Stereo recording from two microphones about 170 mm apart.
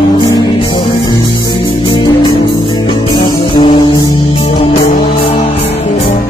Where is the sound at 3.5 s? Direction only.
30° left (ahead or behind).